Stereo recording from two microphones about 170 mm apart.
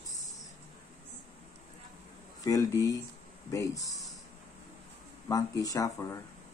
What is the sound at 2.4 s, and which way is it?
A man's voice, 20° left (ahead or behind).